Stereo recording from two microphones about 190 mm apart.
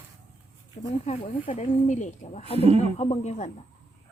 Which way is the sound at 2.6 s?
30° right (ahead or behind).